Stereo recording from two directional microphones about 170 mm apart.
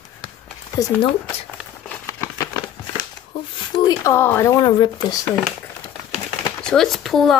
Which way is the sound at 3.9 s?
15° left (ahead or behind).